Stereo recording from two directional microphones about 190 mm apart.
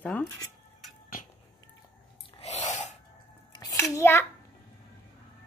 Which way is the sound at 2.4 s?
40° left (ahead or behind).